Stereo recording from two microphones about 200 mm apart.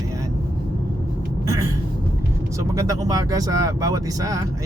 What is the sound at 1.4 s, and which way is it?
Speech, 15° right (ahead or behind).